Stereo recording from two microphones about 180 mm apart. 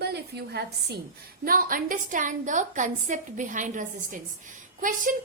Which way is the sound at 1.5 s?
50° right (ahead or behind).